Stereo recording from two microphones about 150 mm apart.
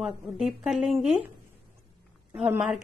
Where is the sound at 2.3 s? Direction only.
10° right (ahead or behind).